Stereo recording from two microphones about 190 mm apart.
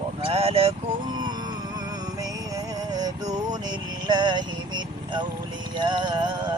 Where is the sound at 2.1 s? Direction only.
20° right (ahead or behind).